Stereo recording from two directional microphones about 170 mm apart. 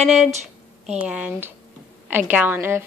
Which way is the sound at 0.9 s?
5° right (ahead or behind).